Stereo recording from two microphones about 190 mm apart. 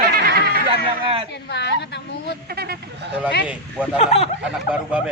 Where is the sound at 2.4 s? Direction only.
55° right (ahead or behind).